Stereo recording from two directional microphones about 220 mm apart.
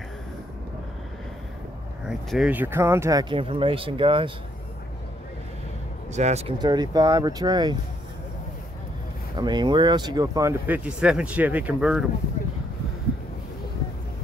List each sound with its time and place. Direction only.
2.0 s speech: 5° right (ahead or behind); by 4.3 s 25° right (ahead or behind)
6.1 s speech: 30° right (ahead or behind)
9.4 s speech: 20° right (ahead or behind); by 12.1 s 5° right (ahead or behind)